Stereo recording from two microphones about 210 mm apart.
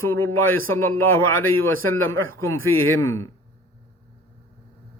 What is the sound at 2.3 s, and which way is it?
Speech, 15° left (ahead or behind).